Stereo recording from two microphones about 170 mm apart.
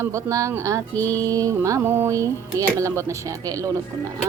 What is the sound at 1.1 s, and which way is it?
Mantra, 20° right (ahead or behind).